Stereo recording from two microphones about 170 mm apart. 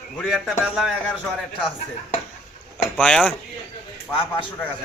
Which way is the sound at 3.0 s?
5° left (ahead or behind).